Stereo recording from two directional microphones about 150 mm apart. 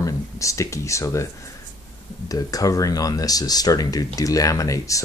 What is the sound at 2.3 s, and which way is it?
Speech, 25° left (ahead or behind).